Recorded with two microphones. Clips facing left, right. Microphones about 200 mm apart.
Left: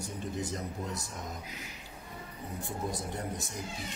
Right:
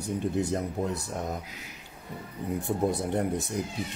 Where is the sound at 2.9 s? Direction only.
60° right (ahead or behind).